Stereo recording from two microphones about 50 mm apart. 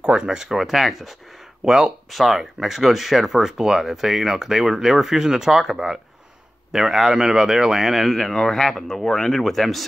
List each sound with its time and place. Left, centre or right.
0.0 s speech: centre
1.6 s speech: centre
2.1 s speech: centre